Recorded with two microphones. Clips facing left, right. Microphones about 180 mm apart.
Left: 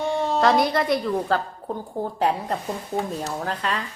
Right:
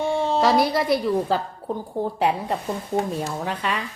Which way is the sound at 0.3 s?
Centre (ahead or behind).